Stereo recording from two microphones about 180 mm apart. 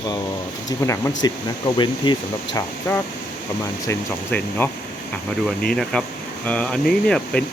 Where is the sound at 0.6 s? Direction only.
15° left (ahead or behind).